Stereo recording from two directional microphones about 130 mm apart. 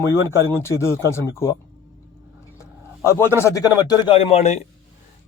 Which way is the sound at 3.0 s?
20° left (ahead or behind).